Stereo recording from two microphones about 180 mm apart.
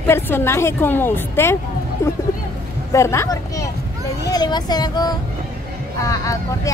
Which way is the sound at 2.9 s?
15° left (ahead or behind).